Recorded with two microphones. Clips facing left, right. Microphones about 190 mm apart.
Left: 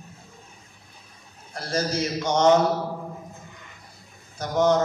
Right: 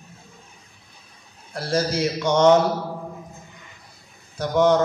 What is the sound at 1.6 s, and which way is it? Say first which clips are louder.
Speech: right 3 dB; 30° right (ahead or behind).